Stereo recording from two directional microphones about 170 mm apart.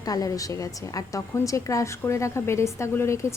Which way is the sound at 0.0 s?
20° left (ahead or behind).